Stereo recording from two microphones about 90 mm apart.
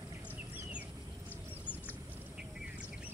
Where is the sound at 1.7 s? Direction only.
20° left (ahead or behind).